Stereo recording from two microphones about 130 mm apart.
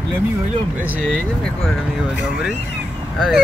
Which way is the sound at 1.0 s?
5° left (ahead or behind).